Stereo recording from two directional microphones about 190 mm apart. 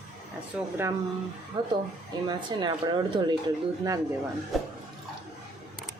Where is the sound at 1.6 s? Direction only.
25° right (ahead or behind).